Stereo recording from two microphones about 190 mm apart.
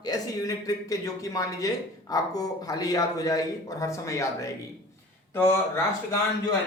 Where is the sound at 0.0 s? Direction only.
20° left (ahead or behind).